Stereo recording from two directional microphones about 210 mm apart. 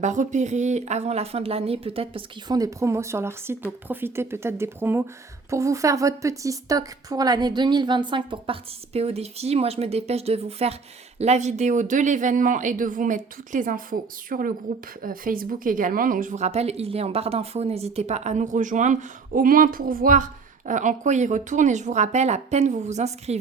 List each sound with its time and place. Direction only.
0.0 s a woman's voice: 35° right (ahead or behind)